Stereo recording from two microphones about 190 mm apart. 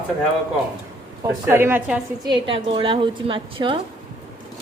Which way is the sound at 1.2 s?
10° right (ahead or behind).